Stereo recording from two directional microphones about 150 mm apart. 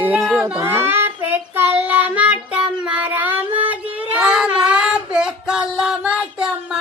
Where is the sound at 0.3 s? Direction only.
15° right (ahead or behind).